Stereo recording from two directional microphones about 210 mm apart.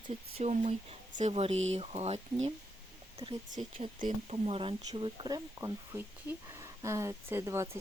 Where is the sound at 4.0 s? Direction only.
40° right (ahead or behind).